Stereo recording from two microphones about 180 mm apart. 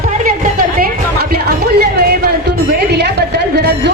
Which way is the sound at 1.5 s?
60° right (ahead or behind).